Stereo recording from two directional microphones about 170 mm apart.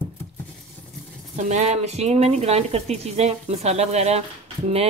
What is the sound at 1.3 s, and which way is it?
Speech, 45° right (ahead or behind).